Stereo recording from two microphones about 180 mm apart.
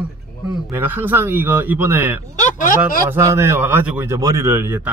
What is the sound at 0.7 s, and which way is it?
A man's voice, 10° right (ahead or behind).